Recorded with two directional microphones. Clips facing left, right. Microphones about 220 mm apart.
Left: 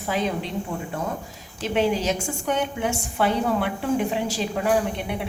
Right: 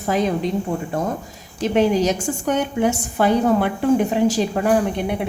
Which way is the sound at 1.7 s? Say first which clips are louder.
Right 5 dB; 45° right (ahead or behind).